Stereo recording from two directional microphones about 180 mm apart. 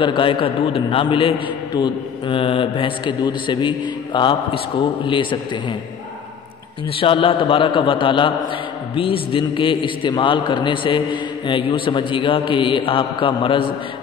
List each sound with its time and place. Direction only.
0.0 s a man's voice: 30° left (ahead or behind)
7.0 s a man's voice: 30° left (ahead or behind)